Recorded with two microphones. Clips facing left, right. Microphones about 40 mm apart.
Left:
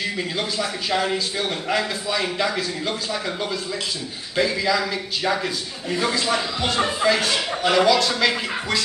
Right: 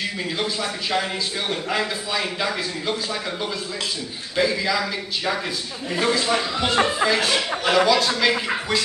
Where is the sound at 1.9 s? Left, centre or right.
Centre.